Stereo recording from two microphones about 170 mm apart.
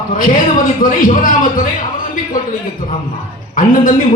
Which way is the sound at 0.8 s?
55° left (ahead or behind).